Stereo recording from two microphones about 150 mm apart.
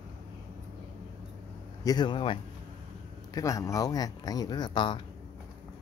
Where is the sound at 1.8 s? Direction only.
25° left (ahead or behind).